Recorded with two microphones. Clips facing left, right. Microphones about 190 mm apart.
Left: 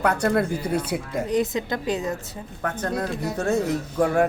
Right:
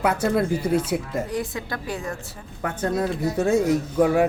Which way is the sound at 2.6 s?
10° right (ahead or behind).